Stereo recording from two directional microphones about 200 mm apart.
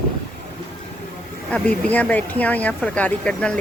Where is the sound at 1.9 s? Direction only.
10° left (ahead or behind).